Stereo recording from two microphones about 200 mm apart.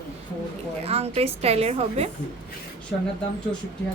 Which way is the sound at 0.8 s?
30° right (ahead or behind).